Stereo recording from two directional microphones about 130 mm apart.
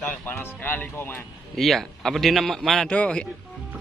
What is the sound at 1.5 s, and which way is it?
A man's voice, centre (ahead or behind).